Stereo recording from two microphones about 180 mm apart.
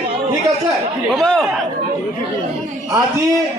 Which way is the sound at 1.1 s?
5° left (ahead or behind).